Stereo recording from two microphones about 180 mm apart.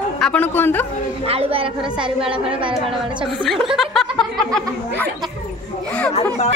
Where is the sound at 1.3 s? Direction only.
30° right (ahead or behind).